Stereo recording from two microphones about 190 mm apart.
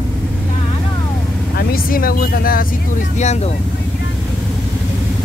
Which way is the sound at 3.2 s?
35° left (ahead or behind).